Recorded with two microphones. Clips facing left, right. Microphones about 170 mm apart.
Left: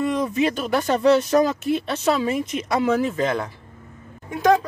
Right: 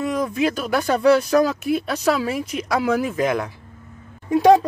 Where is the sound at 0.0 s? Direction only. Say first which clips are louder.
Even; centre (ahead or behind).